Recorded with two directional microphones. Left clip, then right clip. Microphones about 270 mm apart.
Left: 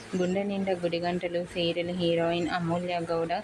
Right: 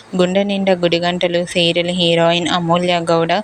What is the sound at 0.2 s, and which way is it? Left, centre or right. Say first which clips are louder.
Speech: right 14 dB; right.